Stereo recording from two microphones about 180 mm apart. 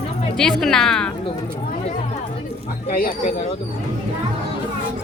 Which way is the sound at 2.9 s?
55° left (ahead or behind).